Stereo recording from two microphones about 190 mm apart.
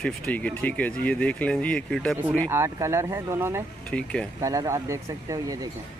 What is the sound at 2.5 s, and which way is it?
Speech, 15° right (ahead or behind).